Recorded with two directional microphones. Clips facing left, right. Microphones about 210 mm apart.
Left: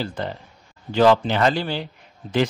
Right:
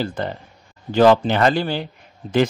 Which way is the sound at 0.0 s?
50° right (ahead or behind).